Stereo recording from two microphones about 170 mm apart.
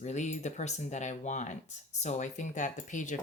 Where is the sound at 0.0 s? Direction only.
45° left (ahead or behind).